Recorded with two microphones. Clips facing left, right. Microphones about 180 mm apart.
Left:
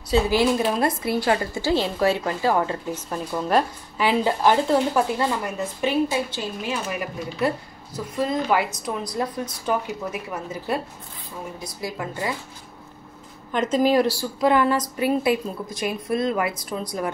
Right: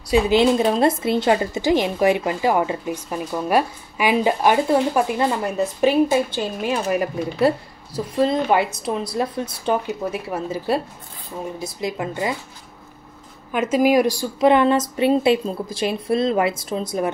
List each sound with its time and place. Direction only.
0.0 s a woman's voice: 15° right (ahead or behind)
5.8 s a woman's voice: 40° right (ahead or behind); by 12.4 s 20° right (ahead or behind)
13.5 s a woman's voice: 10° right (ahead or behind)